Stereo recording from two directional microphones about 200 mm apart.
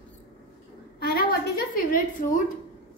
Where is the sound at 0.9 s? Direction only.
50° left (ahead or behind).